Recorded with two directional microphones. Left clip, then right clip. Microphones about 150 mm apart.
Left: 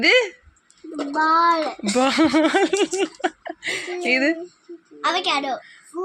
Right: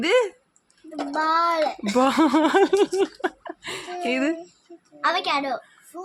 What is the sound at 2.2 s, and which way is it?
Laughter, 25° right (ahead or behind).